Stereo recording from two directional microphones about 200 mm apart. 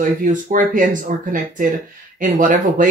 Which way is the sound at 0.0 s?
40° right (ahead or behind).